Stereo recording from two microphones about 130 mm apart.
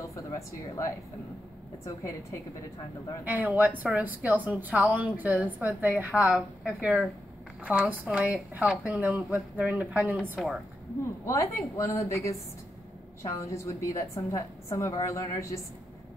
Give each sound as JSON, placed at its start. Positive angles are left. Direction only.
{"t": 0.1, "sound": "a woman's voice", "side_deg": 25}
{"t": 3.3, "sound": "a woman's voice", "side_deg": -10}
{"t": 11.2, "sound": "a woman's voice", "side_deg": 20}